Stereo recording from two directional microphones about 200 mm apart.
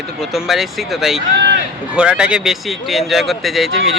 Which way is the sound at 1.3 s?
60° right (ahead or behind).